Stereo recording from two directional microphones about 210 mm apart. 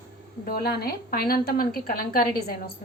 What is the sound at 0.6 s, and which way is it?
A woman's voice, 45° left (ahead or behind).